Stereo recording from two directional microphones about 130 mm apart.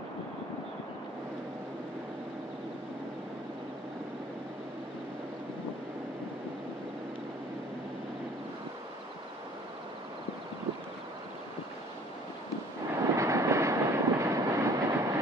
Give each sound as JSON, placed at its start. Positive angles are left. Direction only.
{"t": 13.0, "sound": "train", "side_deg": -25}